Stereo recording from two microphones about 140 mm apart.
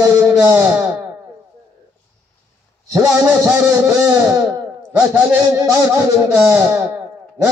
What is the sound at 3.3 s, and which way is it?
A man's voice, 10° right (ahead or behind).